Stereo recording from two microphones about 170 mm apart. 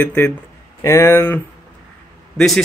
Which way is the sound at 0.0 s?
10° left (ahead or behind).